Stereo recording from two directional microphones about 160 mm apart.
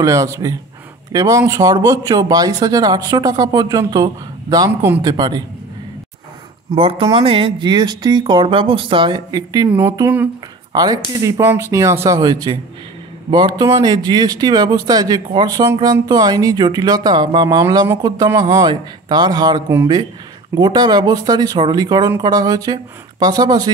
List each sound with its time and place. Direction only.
0.0 s speech: 20° right (ahead or behind)
6.7 s speech: 35° right (ahead or behind); by 10.3 s 15° right (ahead or behind)
10.7 s speech: 25° right (ahead or behind)